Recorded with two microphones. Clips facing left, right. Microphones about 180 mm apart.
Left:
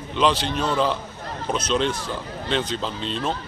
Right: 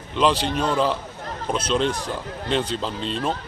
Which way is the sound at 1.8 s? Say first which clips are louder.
Right 1 dB; 35° right (ahead or behind).